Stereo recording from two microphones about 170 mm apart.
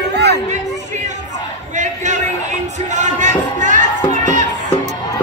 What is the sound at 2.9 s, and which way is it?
Music, 45° right (ahead or behind).